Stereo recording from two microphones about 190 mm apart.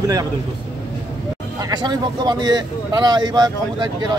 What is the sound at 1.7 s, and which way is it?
Speech, 20° right (ahead or behind).